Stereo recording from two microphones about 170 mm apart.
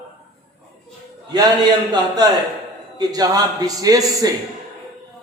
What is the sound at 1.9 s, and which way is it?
Speech, 25° right (ahead or behind).